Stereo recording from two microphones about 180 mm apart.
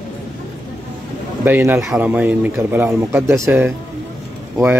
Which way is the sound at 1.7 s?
Centre (ahead or behind).